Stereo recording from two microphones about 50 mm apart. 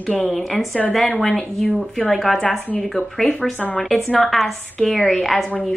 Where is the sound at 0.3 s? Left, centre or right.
Centre.